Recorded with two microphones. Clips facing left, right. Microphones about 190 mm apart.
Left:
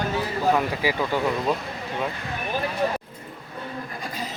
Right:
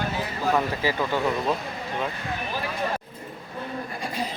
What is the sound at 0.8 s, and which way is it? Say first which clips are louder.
Speech: left 1 dB; 10° left (ahead or behind).